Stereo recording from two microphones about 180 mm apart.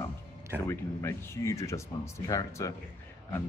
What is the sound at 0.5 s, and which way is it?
Speech, 15° left (ahead or behind).